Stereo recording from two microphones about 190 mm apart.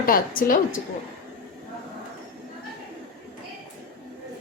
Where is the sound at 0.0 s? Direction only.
50° left (ahead or behind).